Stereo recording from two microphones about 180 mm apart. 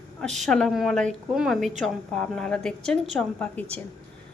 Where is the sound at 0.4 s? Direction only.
Centre (ahead or behind).